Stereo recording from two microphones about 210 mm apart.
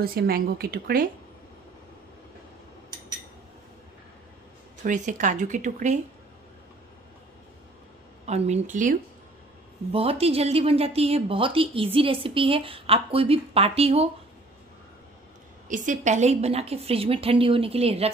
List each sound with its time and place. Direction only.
0.0 s speech: 45° right (ahead or behind)
4.8 s speech: 35° right (ahead or behind)
8.3 s speech: 30° right (ahead or behind)
9.9 s speech: 30° right (ahead or behind)
15.7 s speech: 35° right (ahead or behind)